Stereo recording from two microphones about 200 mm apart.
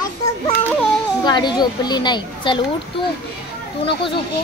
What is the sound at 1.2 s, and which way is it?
A child's voice, 20° left (ahead or behind).